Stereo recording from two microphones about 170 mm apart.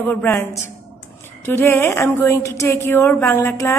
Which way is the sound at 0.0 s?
10° left (ahead or behind).